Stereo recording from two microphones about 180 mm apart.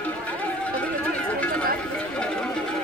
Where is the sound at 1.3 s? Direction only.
5° left (ahead or behind).